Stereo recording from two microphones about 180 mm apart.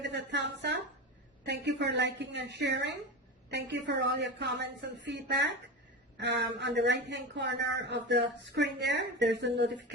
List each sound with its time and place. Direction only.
0.0 s a woman's voice: 75° right (ahead or behind)